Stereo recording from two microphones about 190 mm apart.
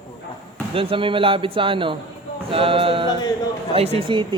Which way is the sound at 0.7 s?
30° right (ahead or behind).